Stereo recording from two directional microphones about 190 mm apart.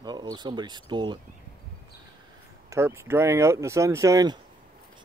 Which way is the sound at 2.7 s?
15° right (ahead or behind).